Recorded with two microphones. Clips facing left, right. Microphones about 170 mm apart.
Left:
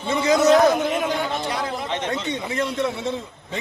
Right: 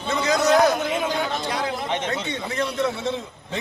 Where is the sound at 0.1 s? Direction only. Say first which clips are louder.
Left 4 dB; 25° left (ahead or behind).